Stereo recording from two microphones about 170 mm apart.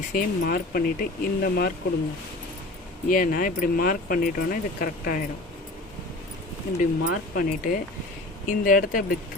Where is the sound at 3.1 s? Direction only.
55° left (ahead or behind).